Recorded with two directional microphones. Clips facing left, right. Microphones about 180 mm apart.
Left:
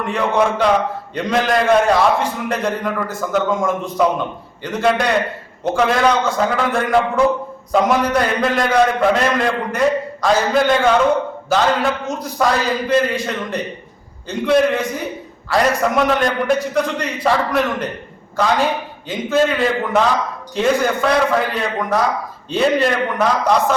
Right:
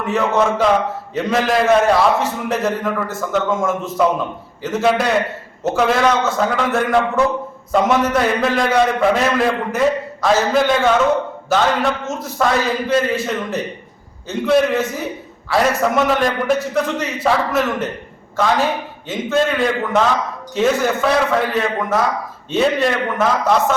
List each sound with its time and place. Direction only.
0.0 s a man's voice: 5° right (ahead or behind)